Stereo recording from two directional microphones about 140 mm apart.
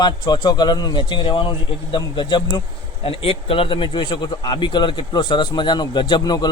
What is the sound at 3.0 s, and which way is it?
Speech, 45° left (ahead or behind).